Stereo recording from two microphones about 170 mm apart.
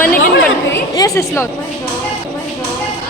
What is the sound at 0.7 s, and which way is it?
Speech, 20° left (ahead or behind).